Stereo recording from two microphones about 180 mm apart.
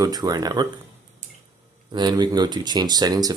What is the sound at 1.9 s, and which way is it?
Speech, 25° right (ahead or behind).